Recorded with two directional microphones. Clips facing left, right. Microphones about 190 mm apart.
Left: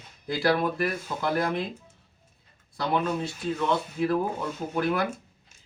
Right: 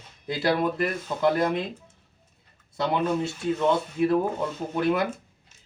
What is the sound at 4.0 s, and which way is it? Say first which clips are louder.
Speech: right 3 dB; 20° right (ahead or behind).